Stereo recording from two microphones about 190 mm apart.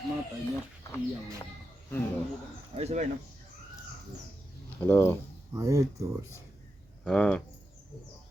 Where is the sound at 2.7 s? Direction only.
35° right (ahead or behind).